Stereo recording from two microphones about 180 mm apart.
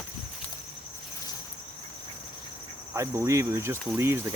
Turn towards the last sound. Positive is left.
turn(degrees=-15)  # may be behind; listen again after turning